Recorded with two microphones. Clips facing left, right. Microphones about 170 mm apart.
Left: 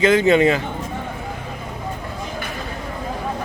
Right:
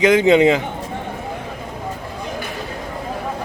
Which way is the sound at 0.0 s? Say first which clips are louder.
Right 2 dB; 15° right (ahead or behind).